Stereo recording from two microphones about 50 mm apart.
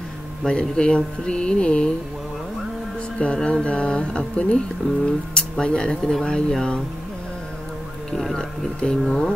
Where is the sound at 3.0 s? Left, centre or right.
Left.